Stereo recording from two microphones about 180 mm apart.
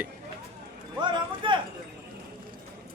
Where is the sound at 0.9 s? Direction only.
25° right (ahead or behind).